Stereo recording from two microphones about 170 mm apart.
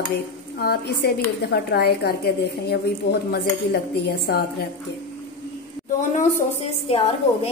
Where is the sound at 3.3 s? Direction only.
70° left (ahead or behind).